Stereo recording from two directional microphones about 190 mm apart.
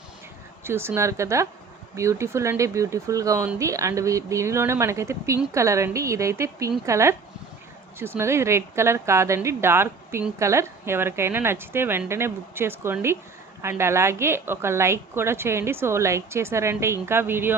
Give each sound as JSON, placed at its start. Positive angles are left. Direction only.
{"t": 0.6, "sound": "a woman's voice", "side_deg": -15}